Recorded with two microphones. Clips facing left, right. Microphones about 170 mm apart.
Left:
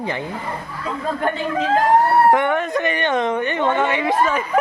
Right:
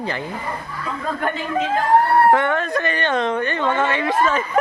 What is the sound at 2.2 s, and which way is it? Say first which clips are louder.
Speech: even; 15° left (ahead or behind).